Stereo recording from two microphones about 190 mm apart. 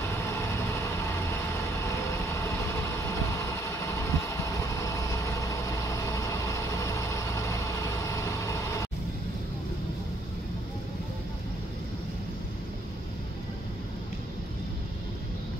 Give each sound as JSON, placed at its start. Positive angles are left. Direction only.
{"t": 3.0, "sound": "vehicle", "side_deg": 15}